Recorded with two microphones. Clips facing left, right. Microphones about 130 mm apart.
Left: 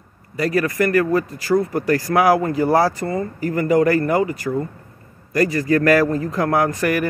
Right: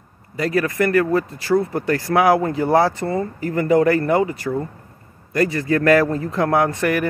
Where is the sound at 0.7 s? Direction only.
25° right (ahead or behind).